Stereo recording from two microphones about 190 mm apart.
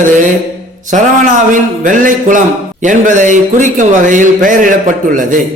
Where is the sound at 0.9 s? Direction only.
40° right (ahead or behind).